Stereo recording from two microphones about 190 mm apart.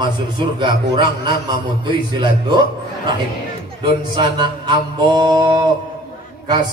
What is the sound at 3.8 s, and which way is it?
A man's voice, 25° right (ahead or behind).